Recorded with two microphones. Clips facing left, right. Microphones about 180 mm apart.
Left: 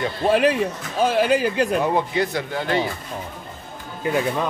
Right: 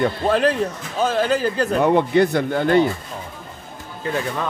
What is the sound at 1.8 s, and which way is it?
Speech, 60° right (ahead or behind).